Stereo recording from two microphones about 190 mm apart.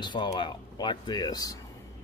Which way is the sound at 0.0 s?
25° left (ahead or behind).